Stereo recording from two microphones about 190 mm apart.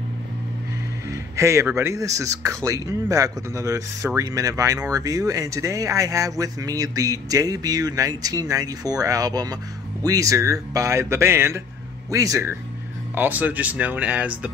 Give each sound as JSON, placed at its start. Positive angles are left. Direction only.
{"t": 1.1, "sound": "speech", "side_deg": -15}